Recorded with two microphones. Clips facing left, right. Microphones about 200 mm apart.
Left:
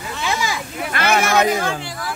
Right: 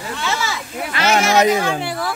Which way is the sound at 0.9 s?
55° left (ahead or behind).